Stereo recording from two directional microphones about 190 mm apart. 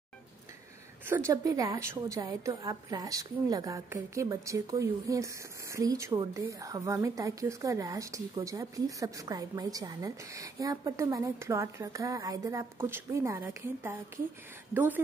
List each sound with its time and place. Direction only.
1.0 s a woman's voice: 15° right (ahead or behind)